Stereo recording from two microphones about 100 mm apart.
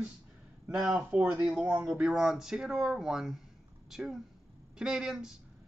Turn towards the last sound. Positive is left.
turn(degrees=-5)  # may be behind; listen again after turning